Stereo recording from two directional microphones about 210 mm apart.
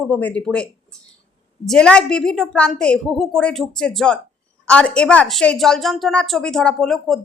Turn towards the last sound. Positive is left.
turn(degrees=0)  # may be behind; listen again after turning